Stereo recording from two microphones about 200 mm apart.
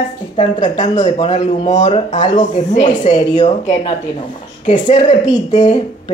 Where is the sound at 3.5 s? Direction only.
35° left (ahead or behind).